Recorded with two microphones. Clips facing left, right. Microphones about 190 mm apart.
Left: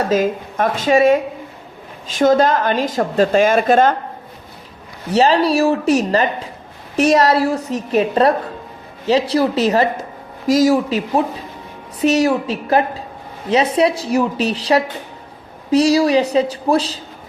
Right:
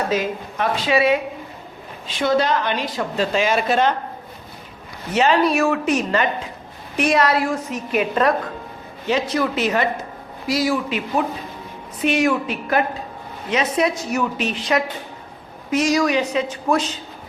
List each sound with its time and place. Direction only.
0.1 s a woman's voice: 50° left (ahead or behind)
5.1 s a woman's voice: 35° left (ahead or behind)